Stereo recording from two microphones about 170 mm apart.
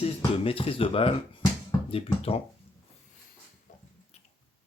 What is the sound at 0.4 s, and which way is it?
Speech, 35° left (ahead or behind).